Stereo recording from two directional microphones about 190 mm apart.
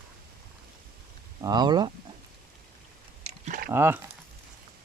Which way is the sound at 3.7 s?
10° right (ahead or behind).